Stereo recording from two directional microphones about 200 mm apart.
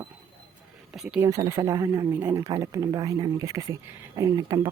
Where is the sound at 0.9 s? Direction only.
5° right (ahead or behind).